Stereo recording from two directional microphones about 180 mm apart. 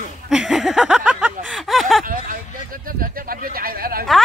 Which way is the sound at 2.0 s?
50° right (ahead or behind).